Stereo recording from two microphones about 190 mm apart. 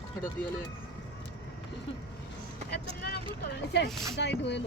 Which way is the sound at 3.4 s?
65° left (ahead or behind).